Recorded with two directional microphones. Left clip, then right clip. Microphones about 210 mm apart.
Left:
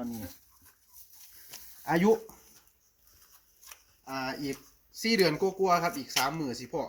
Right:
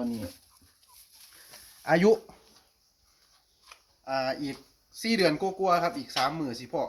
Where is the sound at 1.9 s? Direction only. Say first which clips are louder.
Right 4 dB; 25° right (ahead or behind).